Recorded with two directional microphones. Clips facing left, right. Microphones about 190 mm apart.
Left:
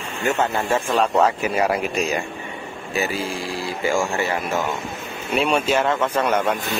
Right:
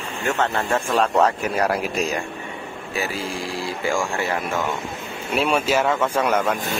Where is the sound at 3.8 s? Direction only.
5° left (ahead or behind).